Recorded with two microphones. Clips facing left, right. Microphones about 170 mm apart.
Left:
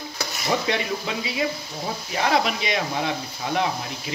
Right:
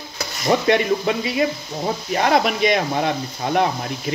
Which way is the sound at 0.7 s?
55° right (ahead or behind).